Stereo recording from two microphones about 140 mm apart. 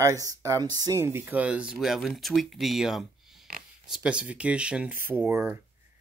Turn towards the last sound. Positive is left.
turn(degrees=-15)  # may be behind; listen again after turning